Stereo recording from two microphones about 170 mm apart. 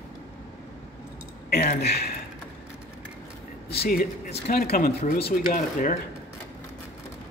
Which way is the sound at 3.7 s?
65° left (ahead or behind).